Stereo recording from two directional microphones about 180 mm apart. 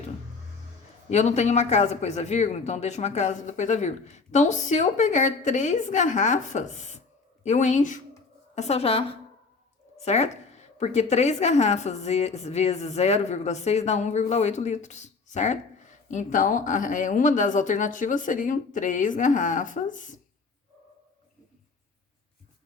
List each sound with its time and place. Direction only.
1.1 s a woman's voice: 40° left (ahead or behind)